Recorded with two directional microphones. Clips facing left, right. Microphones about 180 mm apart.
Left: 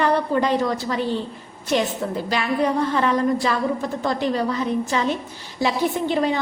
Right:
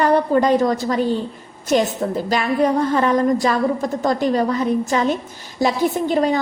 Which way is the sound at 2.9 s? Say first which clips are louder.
Right 3 dB; 40° right (ahead or behind).